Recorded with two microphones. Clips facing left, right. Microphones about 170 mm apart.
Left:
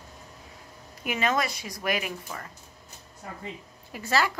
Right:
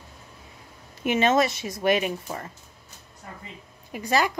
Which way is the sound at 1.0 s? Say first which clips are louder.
Right 6 dB; 25° right (ahead or behind).